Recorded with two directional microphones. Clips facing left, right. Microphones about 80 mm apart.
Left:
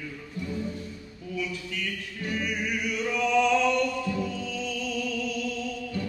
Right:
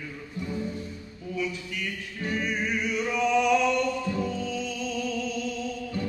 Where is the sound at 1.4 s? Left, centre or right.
Right.